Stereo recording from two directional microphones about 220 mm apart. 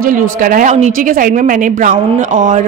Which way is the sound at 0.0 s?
40° right (ahead or behind).